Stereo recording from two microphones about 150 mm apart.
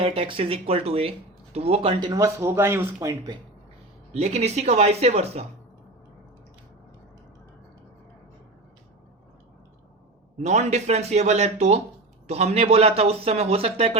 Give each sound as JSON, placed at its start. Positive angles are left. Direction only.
{"t": 0.0, "sound": "speech", "side_deg": -40}
{"t": 4.1, "sound": "a man's voice", "side_deg": -45}
{"t": 10.3, "sound": "a man's voice", "side_deg": -50}